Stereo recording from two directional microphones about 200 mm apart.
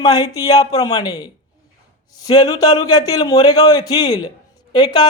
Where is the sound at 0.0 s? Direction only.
20° left (ahead or behind).